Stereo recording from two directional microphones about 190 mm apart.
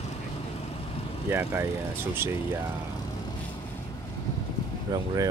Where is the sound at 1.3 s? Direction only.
10° right (ahead or behind).